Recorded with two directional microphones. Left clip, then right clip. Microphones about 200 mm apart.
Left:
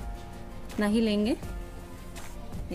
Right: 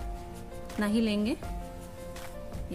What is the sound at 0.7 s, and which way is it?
Speech, 5° left (ahead or behind).